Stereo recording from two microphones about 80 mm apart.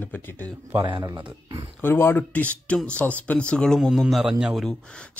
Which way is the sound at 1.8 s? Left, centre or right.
Left.